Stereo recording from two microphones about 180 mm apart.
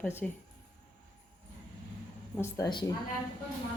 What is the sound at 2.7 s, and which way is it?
Speech, 25° left (ahead or behind).